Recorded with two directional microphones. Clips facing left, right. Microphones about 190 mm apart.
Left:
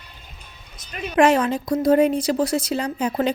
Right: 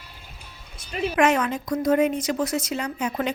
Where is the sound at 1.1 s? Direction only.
30° left (ahead or behind).